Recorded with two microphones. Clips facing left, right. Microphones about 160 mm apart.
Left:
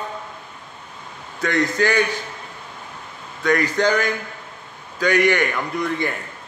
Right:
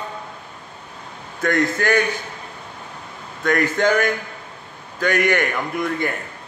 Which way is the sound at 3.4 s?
50° right (ahead or behind).